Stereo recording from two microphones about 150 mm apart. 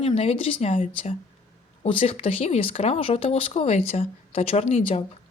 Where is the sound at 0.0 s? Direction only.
40° left (ahead or behind).